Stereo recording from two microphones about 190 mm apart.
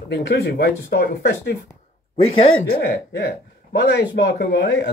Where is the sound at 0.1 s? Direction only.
60° left (ahead or behind).